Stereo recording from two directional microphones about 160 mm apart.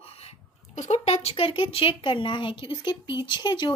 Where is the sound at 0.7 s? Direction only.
45° left (ahead or behind).